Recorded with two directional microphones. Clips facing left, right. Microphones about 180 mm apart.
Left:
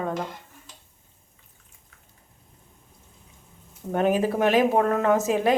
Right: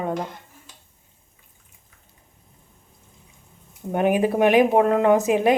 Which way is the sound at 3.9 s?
15° right (ahead or behind).